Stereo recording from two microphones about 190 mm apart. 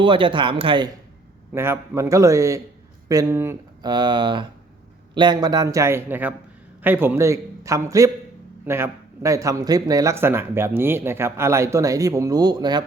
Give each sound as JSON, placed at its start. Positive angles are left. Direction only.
{"t": 0.0, "sound": "speech", "side_deg": -25}
{"t": 1.5, "sound": "speech", "side_deg": -15}